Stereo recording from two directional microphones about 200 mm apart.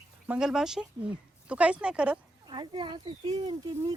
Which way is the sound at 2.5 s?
25° right (ahead or behind).